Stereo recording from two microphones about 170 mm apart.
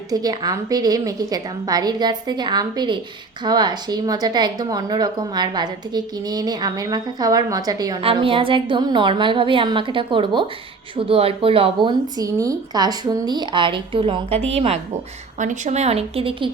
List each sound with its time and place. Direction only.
0.1 s a woman's voice: 20° right (ahead or behind)